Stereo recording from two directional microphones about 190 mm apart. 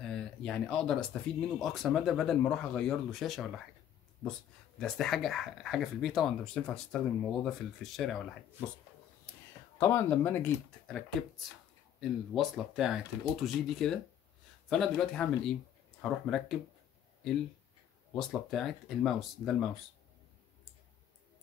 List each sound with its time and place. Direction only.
0.1 s speech: 5° left (ahead or behind)
4.7 s speech: centre (ahead or behind)
9.8 s speech: 15° left (ahead or behind)
18.1 s speech: centre (ahead or behind)